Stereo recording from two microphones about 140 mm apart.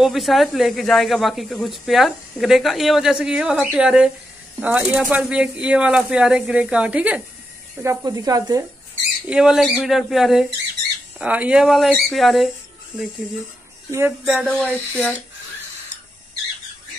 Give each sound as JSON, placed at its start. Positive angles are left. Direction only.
{"t": 0.0, "sound": "speech", "side_deg": 0}
{"t": 7.8, "sound": "speech", "side_deg": -25}
{"t": 9.3, "sound": "speech", "side_deg": -5}
{"t": 13.8, "sound": "speech", "side_deg": -20}
{"t": 14.2, "sound": "speech", "side_deg": -5}
{"t": 14.7, "sound": "speech", "side_deg": 10}